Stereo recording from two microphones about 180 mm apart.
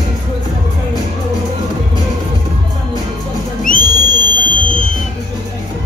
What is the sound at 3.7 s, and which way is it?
Music, 50° left (ahead or behind).